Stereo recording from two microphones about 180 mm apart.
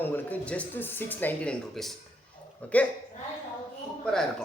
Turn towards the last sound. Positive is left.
turn(degrees=5)  # may be behind; listen again after turning